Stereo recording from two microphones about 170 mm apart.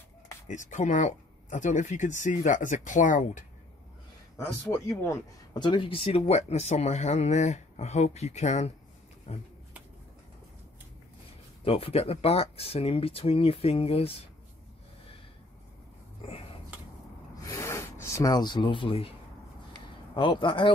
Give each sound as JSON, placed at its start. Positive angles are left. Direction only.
{"t": 0.5, "sound": "speech", "side_deg": 45}
{"t": 4.4, "sound": "speech", "side_deg": 15}
{"t": 11.6, "sound": "speech", "side_deg": 35}
{"t": 16.2, "sound": "a sound", "side_deg": 35}
{"t": 17.4, "sound": "a sound", "side_deg": 20}
{"t": 20.2, "sound": "speech", "side_deg": 30}